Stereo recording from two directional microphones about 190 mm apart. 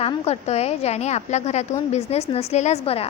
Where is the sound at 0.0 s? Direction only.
35° left (ahead or behind).